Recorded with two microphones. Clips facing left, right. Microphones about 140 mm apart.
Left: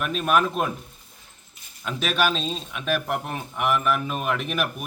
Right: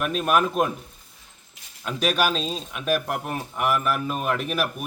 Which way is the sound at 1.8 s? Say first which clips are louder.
Right 1 dB; 5° right (ahead or behind).